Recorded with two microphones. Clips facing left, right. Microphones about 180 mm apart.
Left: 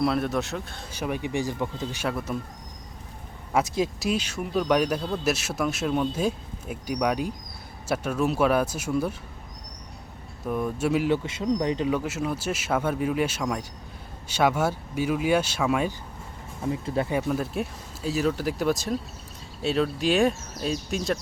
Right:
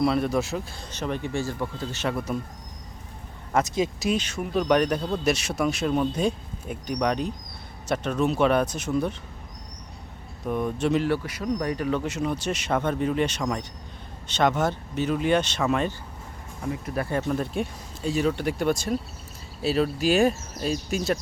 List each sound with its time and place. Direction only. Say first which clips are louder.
0.0 s speech: right 2 dB; centre (ahead or behind)
0.9 s speech: left 1 dB; 10° left (ahead or behind)
2.0 s speech: right 2 dB; centre (ahead or behind)
3.8 s speech: right 1 dB; 5° left (ahead or behind)
10.4 s speech: right 1 dB; 5° left (ahead or behind)
11.1 s speech: left 2 dB; 25° left (ahead or behind)
11.9 s speech: right 1 dB; 5° left (ahead or behind)
16.6 s speech: left 2 dB; 25° left (ahead or behind)
17.1 s speech: even; 5° left (ahead or behind)